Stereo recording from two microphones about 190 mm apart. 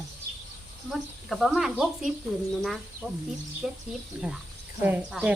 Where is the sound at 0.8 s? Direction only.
Centre (ahead or behind).